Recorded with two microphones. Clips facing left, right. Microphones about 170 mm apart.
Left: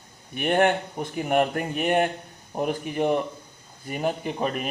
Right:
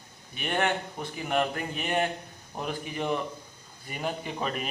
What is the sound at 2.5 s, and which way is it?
A man's voice, 50° left (ahead or behind).